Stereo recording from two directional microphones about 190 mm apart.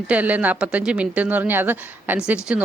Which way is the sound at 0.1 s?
10° right (ahead or behind).